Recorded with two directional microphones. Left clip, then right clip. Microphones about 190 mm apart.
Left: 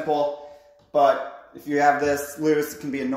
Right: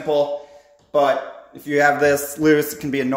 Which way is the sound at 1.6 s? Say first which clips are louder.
Right 4 dB; 35° right (ahead or behind).